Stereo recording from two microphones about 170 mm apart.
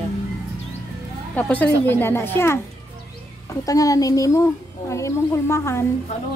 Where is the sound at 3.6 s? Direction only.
20° left (ahead or behind).